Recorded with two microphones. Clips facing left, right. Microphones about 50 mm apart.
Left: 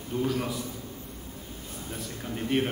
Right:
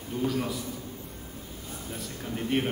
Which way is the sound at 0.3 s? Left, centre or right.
Centre.